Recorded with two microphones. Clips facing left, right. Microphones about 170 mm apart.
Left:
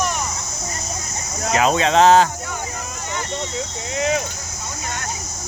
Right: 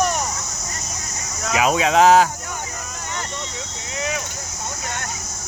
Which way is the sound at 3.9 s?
30° left (ahead or behind).